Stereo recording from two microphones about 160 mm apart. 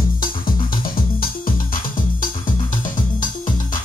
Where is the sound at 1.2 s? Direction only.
60° left (ahead or behind).